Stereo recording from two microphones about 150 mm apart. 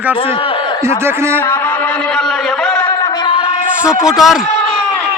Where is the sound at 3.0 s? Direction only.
30° left (ahead or behind).